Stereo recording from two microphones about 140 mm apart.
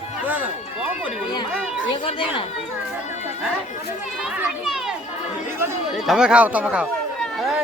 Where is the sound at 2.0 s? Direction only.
50° left (ahead or behind).